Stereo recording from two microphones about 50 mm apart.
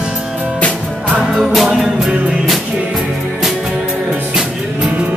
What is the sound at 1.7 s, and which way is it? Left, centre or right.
Music, centre.